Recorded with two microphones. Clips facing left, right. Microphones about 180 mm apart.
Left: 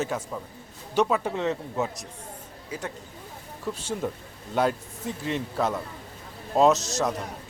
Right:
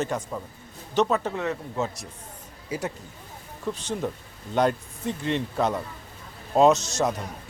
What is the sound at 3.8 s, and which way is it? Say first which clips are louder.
A man's voice: right 1 dB; 10° left (ahead or behind).